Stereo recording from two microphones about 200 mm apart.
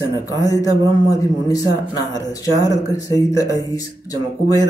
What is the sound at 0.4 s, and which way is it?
Speech, 15° left (ahead or behind).